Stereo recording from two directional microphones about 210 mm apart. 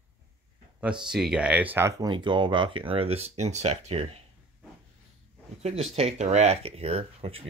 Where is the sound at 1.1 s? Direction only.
5° right (ahead or behind); by 4.2 s 30° right (ahead or behind).